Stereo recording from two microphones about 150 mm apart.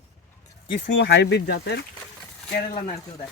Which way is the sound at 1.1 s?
90° left.